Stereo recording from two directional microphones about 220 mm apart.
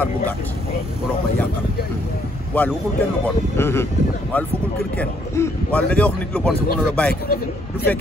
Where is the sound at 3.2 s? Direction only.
10° left (ahead or behind).